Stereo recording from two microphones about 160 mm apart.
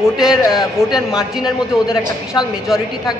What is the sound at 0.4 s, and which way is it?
Speech, 25° left (ahead or behind).